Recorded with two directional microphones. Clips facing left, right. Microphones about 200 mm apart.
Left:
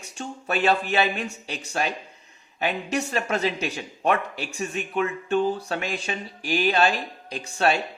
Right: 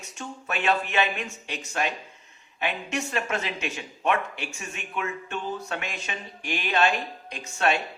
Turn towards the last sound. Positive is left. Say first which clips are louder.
# left 2 dB
turn(degrees=35)  # may be behind; listen again after turning